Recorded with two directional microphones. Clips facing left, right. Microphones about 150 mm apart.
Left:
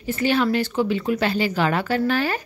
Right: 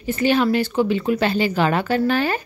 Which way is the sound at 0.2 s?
20° right (ahead or behind).